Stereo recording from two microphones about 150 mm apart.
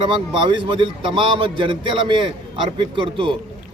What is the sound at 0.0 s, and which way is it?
A man's voice, 35° right (ahead or behind).